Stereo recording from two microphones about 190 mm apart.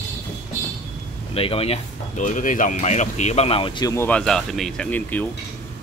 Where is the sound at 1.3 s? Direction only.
30° left (ahead or behind); by 5.3 s 10° left (ahead or behind).